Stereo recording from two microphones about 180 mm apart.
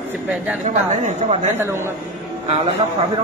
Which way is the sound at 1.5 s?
15° right (ahead or behind).